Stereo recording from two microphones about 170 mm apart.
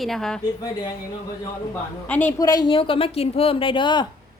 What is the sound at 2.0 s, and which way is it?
Speech, 10° left (ahead or behind).